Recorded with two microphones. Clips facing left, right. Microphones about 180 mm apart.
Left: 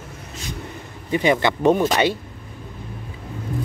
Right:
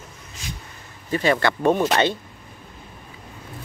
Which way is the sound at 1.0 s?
15° left (ahead or behind).